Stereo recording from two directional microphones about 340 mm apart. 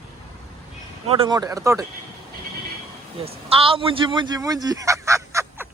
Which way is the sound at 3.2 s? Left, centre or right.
Centre.